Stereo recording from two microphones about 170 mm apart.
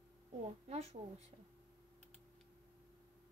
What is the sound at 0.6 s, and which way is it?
Speech, 40° right (ahead or behind).